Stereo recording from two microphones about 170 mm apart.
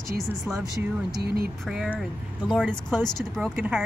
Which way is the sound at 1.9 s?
Centre (ahead or behind).